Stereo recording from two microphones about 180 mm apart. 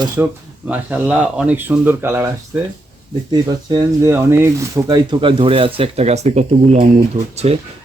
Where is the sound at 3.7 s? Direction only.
15° right (ahead or behind).